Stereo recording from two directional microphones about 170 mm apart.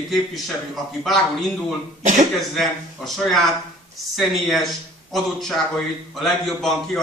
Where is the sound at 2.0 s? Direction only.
45° right (ahead or behind).